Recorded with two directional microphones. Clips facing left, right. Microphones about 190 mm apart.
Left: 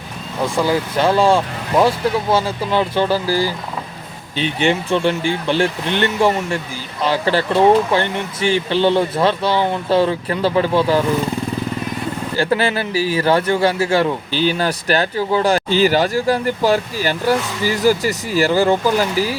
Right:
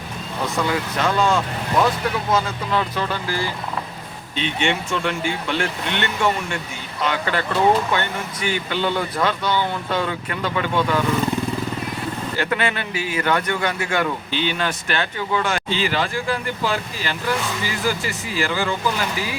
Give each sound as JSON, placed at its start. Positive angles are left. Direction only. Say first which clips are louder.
{"t": 0.5, "sound": "speech", "louder": "left 5 dB", "side_deg": 30}
{"t": 4.6, "sound": "speech", "louder": "left 7 dB", "side_deg": 30}
{"t": 12.4, "sound": "speech", "louder": "left 6 dB", "side_deg": 35}